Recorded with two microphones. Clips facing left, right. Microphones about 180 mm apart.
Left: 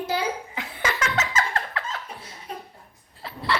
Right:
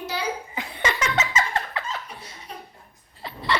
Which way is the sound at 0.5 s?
5° left (ahead or behind).